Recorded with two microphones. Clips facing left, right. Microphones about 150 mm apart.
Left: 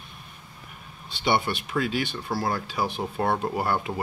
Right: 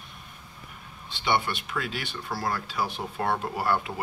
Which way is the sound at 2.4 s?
15° left (ahead or behind).